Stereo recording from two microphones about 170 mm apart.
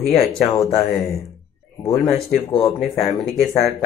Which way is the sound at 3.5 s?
40° left (ahead or behind).